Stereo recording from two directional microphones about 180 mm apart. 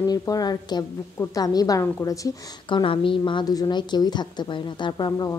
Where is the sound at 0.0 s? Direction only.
20° left (ahead or behind).